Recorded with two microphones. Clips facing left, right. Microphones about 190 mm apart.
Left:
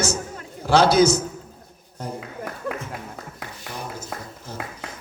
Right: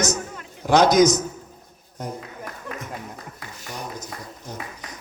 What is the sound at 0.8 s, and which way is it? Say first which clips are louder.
Speech: right 1 dB; 30° left (ahead or behind).